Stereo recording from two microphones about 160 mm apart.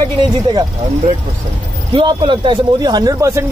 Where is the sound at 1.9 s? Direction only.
30° right (ahead or behind).